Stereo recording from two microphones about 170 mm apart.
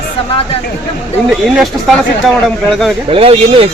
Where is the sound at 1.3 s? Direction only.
Centre (ahead or behind).